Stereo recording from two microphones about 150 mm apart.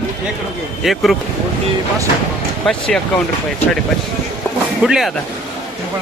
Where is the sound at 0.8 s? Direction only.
Centre (ahead or behind).